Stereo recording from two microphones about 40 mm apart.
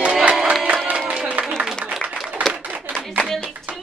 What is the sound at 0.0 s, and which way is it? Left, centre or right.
Music, right.